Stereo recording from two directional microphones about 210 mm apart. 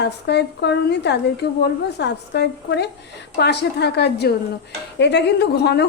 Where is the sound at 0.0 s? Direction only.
55° left (ahead or behind).